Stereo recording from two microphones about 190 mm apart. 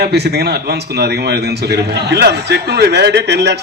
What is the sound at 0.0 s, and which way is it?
A man's voice, 60° right (ahead or behind).